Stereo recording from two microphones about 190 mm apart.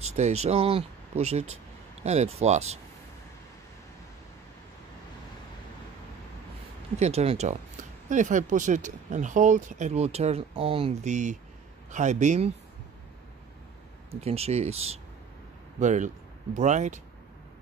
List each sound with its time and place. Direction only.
0.0 s speech: 35° right (ahead or behind)
7.0 s speech: 35° right (ahead or behind)
14.2 s speech: 30° right (ahead or behind)